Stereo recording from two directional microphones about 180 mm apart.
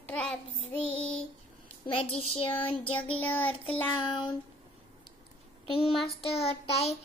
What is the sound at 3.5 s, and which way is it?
Child singing, 30° left (ahead or behind).